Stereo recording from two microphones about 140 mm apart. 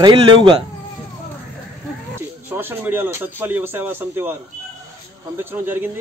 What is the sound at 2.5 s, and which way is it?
Speech, 15° right (ahead or behind).